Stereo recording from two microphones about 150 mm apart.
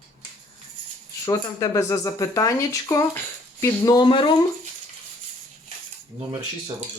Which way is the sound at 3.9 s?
35° left (ahead or behind).